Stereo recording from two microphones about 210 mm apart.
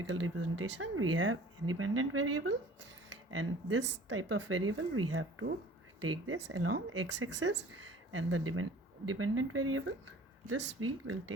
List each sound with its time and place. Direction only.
0.1 s speech: 75° right (ahead or behind)
8.1 s speech: 75° right (ahead or behind)